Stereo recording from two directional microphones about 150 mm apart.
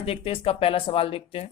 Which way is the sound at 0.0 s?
40° left (ahead or behind).